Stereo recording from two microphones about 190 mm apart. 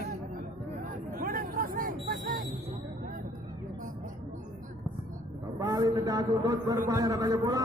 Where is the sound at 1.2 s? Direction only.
50° right (ahead or behind).